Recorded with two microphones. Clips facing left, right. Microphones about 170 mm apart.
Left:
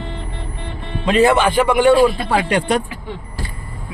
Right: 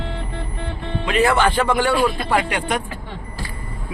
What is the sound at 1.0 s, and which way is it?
Speech, 25° left (ahead or behind).